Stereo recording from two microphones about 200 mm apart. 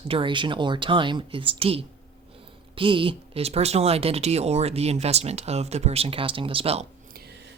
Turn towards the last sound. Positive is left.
turn(degrees=-55)  # may be behind; listen again after turning